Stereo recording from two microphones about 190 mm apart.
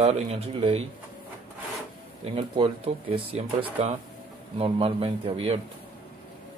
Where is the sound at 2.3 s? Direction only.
30° right (ahead or behind).